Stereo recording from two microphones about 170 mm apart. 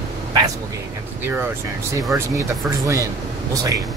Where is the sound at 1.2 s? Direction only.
15° right (ahead or behind).